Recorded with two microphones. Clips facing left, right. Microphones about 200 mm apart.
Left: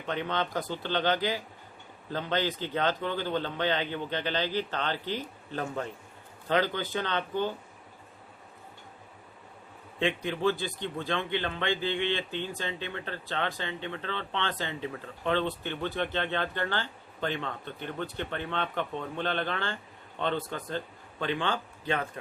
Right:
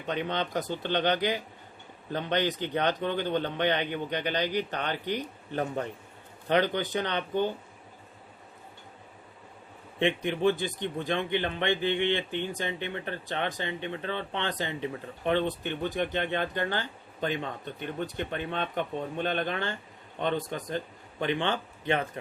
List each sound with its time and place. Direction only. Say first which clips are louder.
0.1 s a man's voice: right 1 dB; 15° right (ahead or behind)
10.0 s a man's voice: right 2 dB; 20° right (ahead or behind)